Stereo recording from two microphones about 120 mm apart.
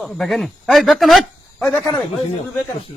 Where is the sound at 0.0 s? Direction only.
Centre (ahead or behind).